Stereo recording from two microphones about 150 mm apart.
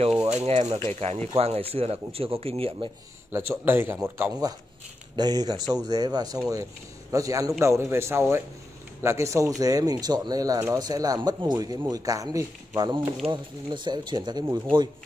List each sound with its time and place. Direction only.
0.3 s speech: 45° right (ahead or behind)
3.3 s speech: 15° right (ahead or behind)